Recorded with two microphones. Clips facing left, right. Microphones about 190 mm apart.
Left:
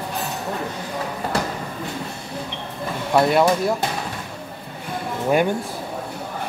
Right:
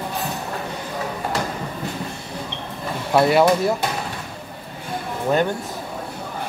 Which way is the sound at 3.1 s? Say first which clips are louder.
Right 1 dB; 5° right (ahead or behind).